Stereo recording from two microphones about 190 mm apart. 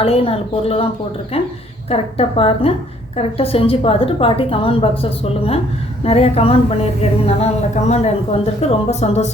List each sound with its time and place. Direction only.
0.0 s a woman's voice: 30° left (ahead or behind)
1.9 s a woman's voice: 30° left (ahead or behind)